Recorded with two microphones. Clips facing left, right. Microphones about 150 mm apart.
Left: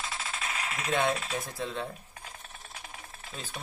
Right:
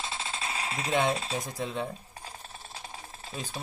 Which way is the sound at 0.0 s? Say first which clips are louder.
Right 1 dB; 25° right (ahead or behind).